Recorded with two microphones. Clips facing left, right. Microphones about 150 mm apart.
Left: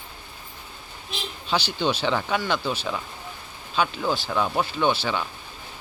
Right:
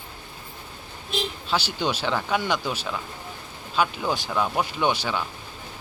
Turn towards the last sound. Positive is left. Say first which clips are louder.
# left 1 dB
turn(degrees=-15)  # may be behind; listen again after turning